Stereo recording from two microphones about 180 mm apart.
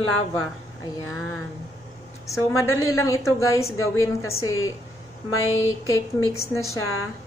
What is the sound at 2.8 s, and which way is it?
A woman's voice, 15° left (ahead or behind).